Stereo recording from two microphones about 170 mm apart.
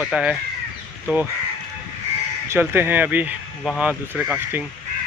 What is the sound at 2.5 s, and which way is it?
Speech, 15° right (ahead or behind).